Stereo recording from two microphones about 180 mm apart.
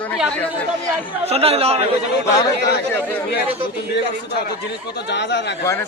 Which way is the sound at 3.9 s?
65° left (ahead or behind).